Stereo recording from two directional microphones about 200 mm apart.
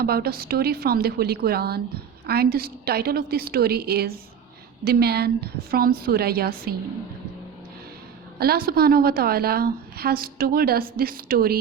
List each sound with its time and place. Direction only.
0.0 s a woman's voice: 50° right (ahead or behind)
8.4 s a woman's voice: 50° right (ahead or behind)